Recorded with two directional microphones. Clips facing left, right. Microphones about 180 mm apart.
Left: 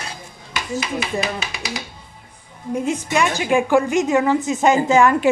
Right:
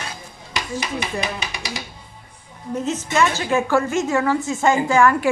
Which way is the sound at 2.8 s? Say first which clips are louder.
Even; 15° left (ahead or behind).